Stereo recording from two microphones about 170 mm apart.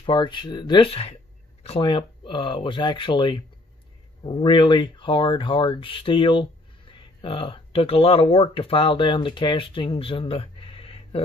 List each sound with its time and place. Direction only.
0.0 s speech: 30° left (ahead or behind)